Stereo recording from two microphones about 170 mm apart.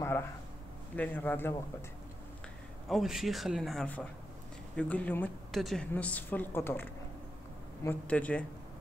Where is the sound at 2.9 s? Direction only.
Centre (ahead or behind).